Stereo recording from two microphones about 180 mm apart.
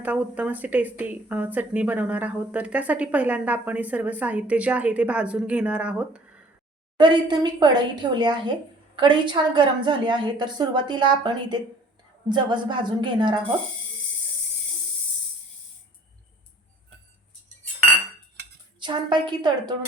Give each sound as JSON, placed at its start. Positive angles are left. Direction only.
{"t": 0.0, "sound": "a woman's voice", "side_deg": -10}
{"t": 7.0, "sound": "a woman's voice", "side_deg": -25}
{"t": 18.8, "sound": "a woman's voice", "side_deg": -25}